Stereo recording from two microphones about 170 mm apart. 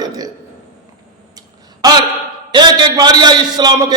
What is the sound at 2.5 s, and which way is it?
A man's voice, 25° right (ahead or behind).